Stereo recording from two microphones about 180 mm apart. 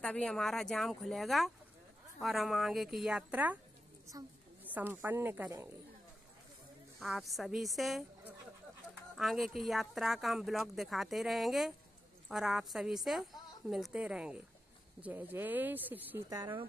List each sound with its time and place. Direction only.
0.0 s speech: 5° left (ahead or behind)
4.7 s speech: 10° right (ahead or behind)
7.0 s speech: centre (ahead or behind)
16.3 s speech: 25° right (ahead or behind)